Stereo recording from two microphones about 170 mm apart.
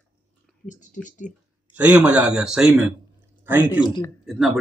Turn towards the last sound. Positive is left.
turn(degrees=0)  # may be behind; listen again after turning